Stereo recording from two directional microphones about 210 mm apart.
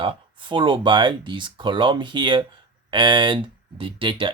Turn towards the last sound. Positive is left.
turn(degrees=-25)  # may be behind; listen again after turning